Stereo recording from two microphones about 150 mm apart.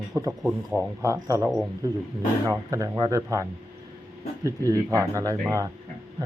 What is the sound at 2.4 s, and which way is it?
Speech, 20° right (ahead or behind).